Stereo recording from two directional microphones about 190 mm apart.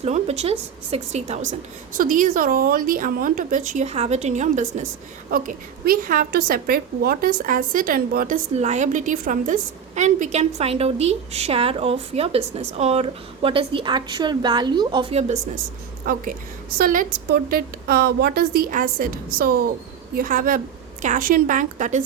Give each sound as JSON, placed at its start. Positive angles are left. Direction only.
{"t": 0.0, "sound": "a woman's voice", "side_deg": -35}
{"t": 16.1, "sound": "a woman's voice", "side_deg": -50}